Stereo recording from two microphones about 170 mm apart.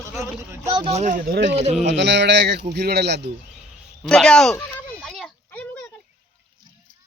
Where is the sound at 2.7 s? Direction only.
70° right (ahead or behind).